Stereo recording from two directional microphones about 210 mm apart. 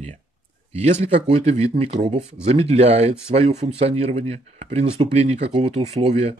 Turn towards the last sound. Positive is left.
turn(degrees=-30)  # may be behind; listen again after turning